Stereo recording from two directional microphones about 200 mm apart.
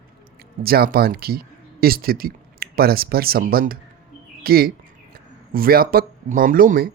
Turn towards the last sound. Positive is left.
turn(degrees=-45)  # may be behind; listen again after turning